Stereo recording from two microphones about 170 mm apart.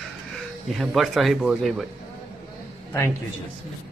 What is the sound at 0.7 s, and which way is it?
Speech, centre (ahead or behind).